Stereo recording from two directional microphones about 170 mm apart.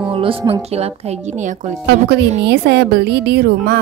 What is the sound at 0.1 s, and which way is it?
Speech, 35° right (ahead or behind).